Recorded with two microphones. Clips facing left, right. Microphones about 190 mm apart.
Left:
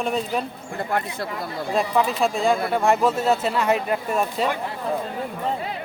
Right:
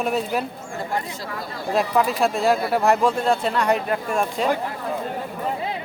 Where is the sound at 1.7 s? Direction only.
Centre (ahead or behind).